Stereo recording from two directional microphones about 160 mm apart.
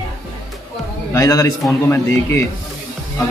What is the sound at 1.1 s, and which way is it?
Speech, 20° left (ahead or behind).